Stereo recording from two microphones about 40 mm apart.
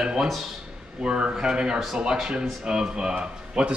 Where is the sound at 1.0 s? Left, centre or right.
Right.